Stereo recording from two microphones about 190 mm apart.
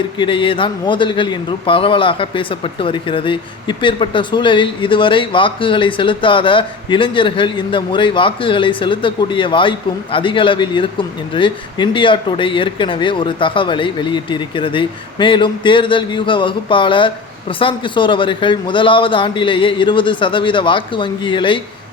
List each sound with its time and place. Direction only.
0.2 s speech: 25° left (ahead or behind)